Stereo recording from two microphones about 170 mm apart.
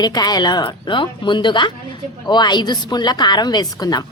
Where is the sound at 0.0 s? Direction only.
25° left (ahead or behind).